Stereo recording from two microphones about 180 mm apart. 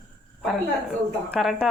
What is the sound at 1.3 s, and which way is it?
Speech, centre (ahead or behind).